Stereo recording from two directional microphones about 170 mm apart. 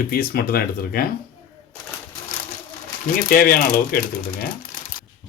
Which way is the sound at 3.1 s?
55° left (ahead or behind).